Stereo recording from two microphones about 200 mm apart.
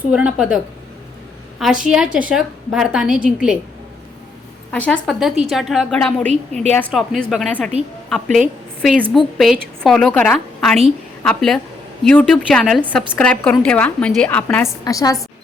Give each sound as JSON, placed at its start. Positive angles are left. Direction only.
{"t": 0.1, "sound": "a woman's voice", "side_deg": -5}
{"t": 4.7, "sound": "a woman's voice", "side_deg": 5}
{"t": 6.2, "sound": "a woman's voice", "side_deg": -35}
{"t": 6.7, "sound": "a woman's voice", "side_deg": 5}